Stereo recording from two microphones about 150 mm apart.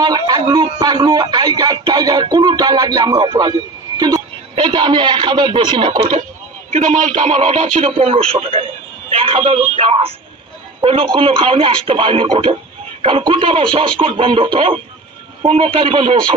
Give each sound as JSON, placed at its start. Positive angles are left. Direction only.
{"t": 0.0, "sound": "a man's voice", "side_deg": -25}
{"t": 6.7, "sound": "speech", "side_deg": -60}